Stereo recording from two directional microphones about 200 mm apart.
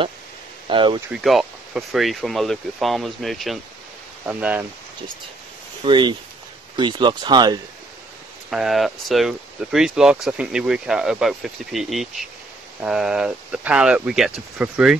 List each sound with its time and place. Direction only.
0.7 s speech: 25° right (ahead or behind)
1.1 s speech: centre (ahead or behind)
5.9 s speech: 25° right (ahead or behind)
8.5 s speech: centre (ahead or behind)